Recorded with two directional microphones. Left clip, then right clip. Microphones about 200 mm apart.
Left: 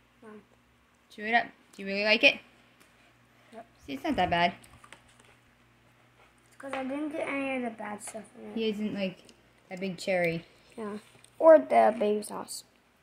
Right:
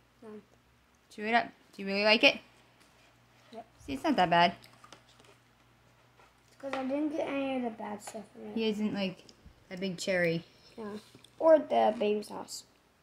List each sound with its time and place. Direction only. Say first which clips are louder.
1.1 s speech: left 2 dB; 5° right (ahead or behind)
3.8 s a woman's voice: right 1 dB; 5° right (ahead or behind)
6.9 s a woman's voice: right 2 dB; 5° right (ahead or behind)
10.7 s a woman's voice: left 4 dB; 25° left (ahead or behind)